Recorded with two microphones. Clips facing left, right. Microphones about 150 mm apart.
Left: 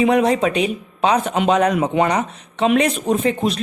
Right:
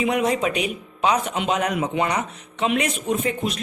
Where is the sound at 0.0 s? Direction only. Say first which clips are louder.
Left 6 dB; 35° left (ahead or behind).